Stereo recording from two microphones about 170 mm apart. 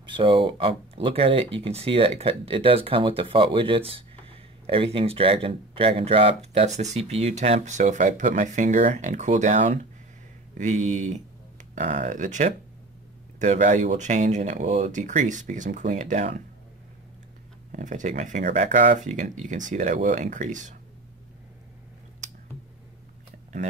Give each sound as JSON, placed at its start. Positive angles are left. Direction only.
{"t": 0.0, "sound": "speech", "side_deg": -30}
{"t": 17.6, "sound": "speech", "side_deg": -50}